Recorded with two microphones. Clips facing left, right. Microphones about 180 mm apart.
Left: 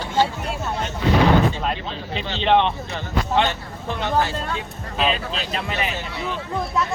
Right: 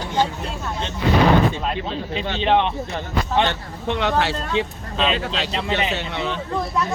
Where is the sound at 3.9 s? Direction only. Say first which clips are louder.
Right 2 dB; 75° right (ahead or behind).